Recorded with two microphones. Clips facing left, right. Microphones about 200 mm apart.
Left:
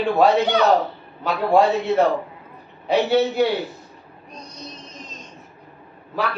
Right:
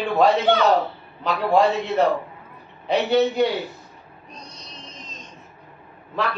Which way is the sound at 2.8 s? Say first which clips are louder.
Left 1 dB; 5° left (ahead or behind).